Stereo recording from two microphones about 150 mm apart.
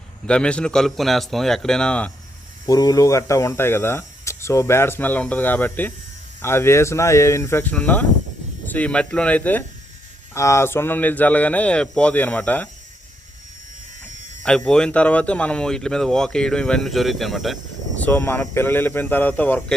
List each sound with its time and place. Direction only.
0.3 s speech: 5° left (ahead or behind)
2.6 s speech: 25° left (ahead or behind)
14.4 s speech: 5° left (ahead or behind)
17.9 s speech: 10° left (ahead or behind)